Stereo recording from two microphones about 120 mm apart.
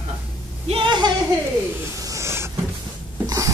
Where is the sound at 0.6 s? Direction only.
45° right (ahead or behind).